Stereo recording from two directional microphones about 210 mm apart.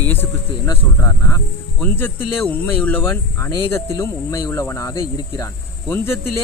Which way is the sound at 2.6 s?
10° left (ahead or behind).